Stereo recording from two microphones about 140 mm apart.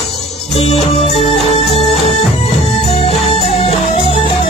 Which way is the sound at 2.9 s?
45° left (ahead or behind).